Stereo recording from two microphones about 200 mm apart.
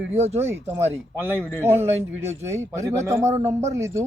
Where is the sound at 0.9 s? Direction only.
10° right (ahead or behind).